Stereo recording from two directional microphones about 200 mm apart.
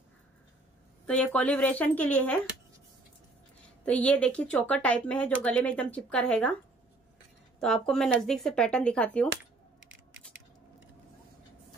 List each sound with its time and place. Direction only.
1.0 s speech: 5° left (ahead or behind)
3.8 s speech: 5° left (ahead or behind)
7.6 s speech: centre (ahead or behind)